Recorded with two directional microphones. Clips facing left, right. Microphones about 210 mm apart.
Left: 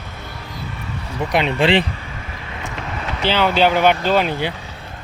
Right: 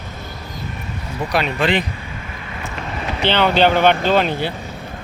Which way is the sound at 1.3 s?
30° left (ahead or behind).